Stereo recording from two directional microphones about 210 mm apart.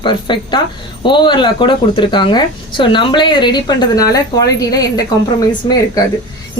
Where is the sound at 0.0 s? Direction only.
20° left (ahead or behind).